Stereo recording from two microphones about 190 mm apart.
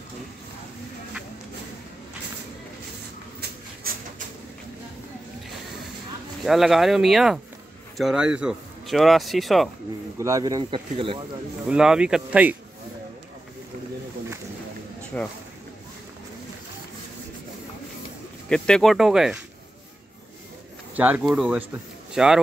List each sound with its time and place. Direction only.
3.9 s bird: 50° right (ahead or behind)
6.4 s speech: centre (ahead or behind)
10.1 s speech: 15° right (ahead or behind)
11.6 s speech: 5° right (ahead or behind)
15.1 s speech: 10° left (ahead or behind)
18.5 s speech: 5° left (ahead or behind)
20.9 s speech: 10° right (ahead or behind)